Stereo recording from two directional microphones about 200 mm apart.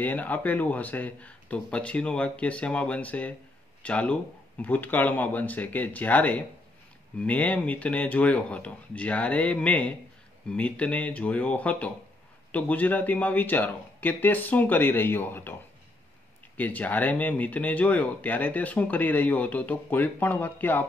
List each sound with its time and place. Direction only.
0.0 s speech: 10° left (ahead or behind)
16.5 s speech: 10° left (ahead or behind)